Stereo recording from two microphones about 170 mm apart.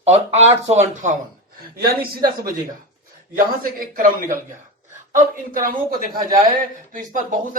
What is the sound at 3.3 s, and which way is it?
Speech, 55° right (ahead or behind).